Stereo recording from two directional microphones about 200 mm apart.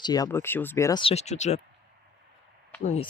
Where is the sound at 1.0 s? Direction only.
35° left (ahead or behind).